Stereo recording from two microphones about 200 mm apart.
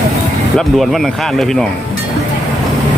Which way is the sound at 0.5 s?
Centre (ahead or behind).